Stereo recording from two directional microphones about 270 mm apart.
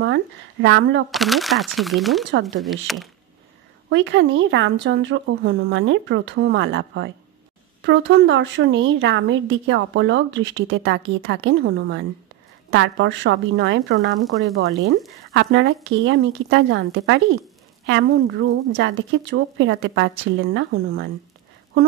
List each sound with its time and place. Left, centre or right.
0.0 s a woman's voice: right
1.1 s speech: centre
3.9 s a woman's voice: right